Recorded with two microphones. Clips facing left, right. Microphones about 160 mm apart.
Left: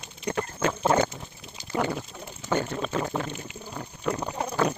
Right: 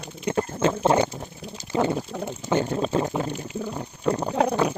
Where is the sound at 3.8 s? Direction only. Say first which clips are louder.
Right 3 dB; 25° right (ahead or behind).